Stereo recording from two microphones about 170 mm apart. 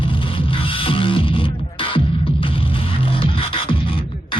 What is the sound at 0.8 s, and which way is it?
Music, 30° left (ahead or behind).